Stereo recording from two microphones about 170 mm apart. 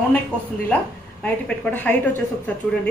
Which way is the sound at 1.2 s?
10° left (ahead or behind).